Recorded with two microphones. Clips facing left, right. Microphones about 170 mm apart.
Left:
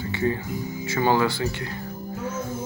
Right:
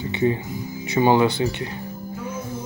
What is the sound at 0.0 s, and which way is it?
Music, 20° right (ahead or behind).